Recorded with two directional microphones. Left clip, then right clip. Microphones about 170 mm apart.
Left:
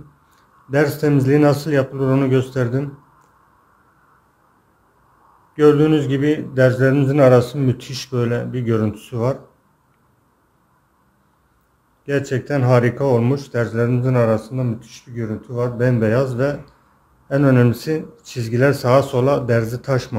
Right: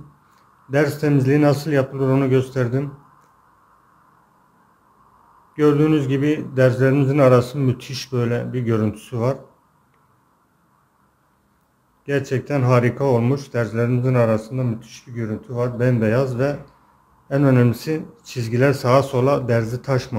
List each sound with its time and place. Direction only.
0.7 s speech: 5° left (ahead or behind)
5.5 s speech: centre (ahead or behind)
12.0 s speech: 5° left (ahead or behind)